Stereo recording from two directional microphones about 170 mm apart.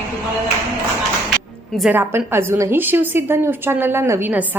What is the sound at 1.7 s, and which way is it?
Speech, centre (ahead or behind).